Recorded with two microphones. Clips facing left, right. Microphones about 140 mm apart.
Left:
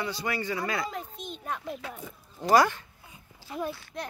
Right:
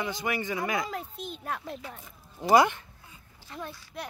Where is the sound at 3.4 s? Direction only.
10° left (ahead or behind).